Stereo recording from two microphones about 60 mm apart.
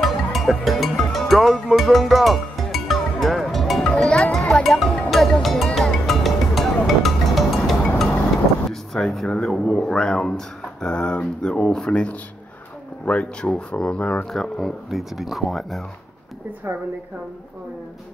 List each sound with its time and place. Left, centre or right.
0.0 s music: centre
3.8 s music: centre
4.6 s speech: centre
5.1 s music: centre
8.6 s speech: centre
14.3 s speech: centre